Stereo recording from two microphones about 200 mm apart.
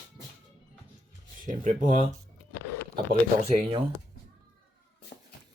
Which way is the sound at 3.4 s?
30° right (ahead or behind).